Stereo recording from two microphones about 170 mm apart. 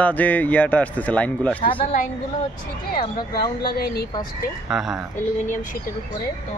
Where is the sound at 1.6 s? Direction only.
30° left (ahead or behind).